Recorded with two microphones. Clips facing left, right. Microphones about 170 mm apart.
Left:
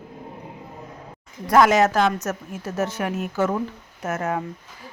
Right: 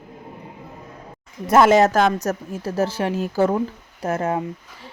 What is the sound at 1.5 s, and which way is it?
Speech, 25° right (ahead or behind).